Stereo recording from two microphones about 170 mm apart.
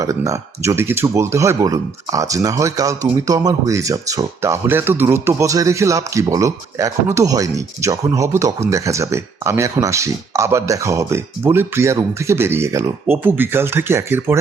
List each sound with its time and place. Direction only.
0.0 s speech: 20° right (ahead or behind)